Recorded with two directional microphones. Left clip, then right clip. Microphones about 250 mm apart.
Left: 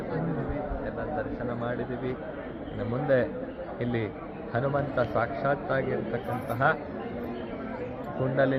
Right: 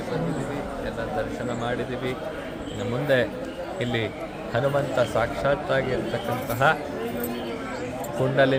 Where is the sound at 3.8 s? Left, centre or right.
Centre.